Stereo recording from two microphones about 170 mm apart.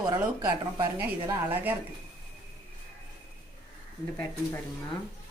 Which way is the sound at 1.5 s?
10° right (ahead or behind).